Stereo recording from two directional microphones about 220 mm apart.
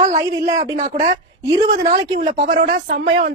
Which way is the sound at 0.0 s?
30° right (ahead or behind).